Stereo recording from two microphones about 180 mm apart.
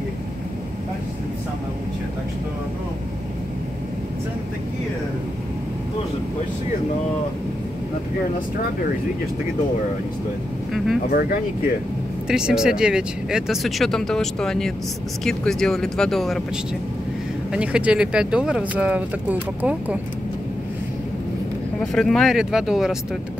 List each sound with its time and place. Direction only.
11.1 s speech: 55° left (ahead or behind)
12.3 s speech: 5° right (ahead or behind)
17.5 s speech: 5° right (ahead or behind)
21.7 s speech: 5° left (ahead or behind)